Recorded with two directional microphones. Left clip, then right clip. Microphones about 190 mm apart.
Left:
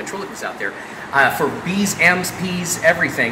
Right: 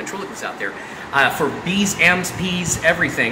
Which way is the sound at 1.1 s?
10° left (ahead or behind).